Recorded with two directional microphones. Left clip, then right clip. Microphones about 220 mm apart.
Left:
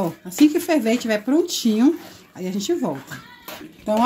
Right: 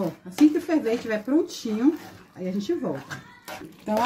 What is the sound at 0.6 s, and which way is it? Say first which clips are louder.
Speech: left 5 dB; 45° left (ahead or behind).